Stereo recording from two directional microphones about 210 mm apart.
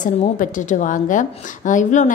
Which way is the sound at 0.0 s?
35° left (ahead or behind).